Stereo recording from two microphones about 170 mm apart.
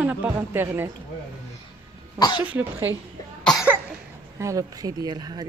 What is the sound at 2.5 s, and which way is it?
Speech, 10° right (ahead or behind).